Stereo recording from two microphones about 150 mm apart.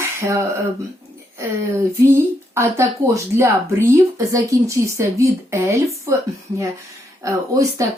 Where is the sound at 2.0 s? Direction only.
15° right (ahead or behind).